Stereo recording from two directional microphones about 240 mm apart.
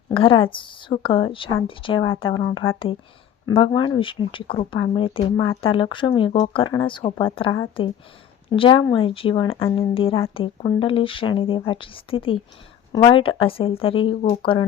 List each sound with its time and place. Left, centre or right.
0.1 s speech: left